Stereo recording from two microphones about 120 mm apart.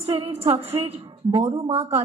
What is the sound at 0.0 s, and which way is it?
Speech, 55° right (ahead or behind).